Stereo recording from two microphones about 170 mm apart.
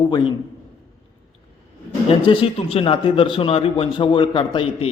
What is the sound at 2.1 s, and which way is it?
A man's voice, 30° left (ahead or behind).